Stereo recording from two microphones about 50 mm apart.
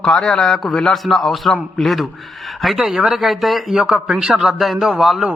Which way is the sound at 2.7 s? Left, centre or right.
Centre.